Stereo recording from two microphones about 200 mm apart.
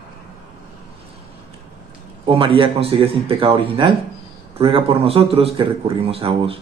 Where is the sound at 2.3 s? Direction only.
25° right (ahead or behind).